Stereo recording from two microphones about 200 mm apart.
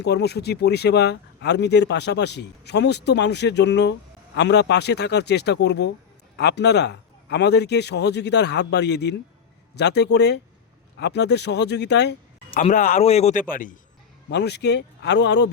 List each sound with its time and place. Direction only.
0.0 s speech: 55° left (ahead or behind)
12.5 s a man's voice: 40° left (ahead or behind)
14.3 s speech: 60° left (ahead or behind)